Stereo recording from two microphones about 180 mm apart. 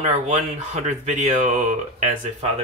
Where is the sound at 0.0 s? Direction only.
40° right (ahead or behind).